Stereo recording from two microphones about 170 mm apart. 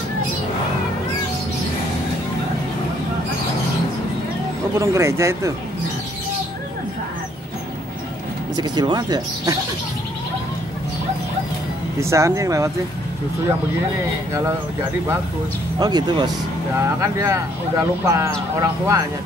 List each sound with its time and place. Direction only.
4.7 s speech: 15° right (ahead or behind)
8.5 s speech: 25° right (ahead or behind)
12.0 s speech: 15° right (ahead or behind)
14.3 s speech: 15° right (ahead or behind)